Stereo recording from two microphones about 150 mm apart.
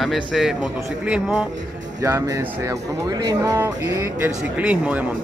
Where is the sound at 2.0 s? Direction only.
20° right (ahead or behind).